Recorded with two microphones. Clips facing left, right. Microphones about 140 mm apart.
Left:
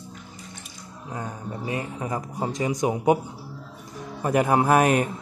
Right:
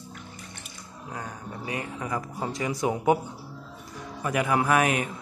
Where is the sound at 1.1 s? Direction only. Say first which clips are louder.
Left 4 dB; 25° left (ahead or behind).